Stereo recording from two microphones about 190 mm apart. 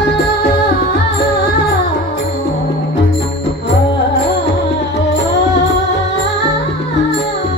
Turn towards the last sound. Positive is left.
turn(degrees=65)  # may be behind; listen again after turning